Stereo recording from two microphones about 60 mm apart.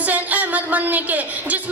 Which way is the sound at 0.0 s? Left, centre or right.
Right.